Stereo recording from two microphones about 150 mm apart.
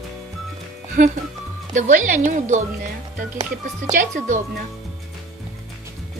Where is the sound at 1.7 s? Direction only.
60° right (ahead or behind).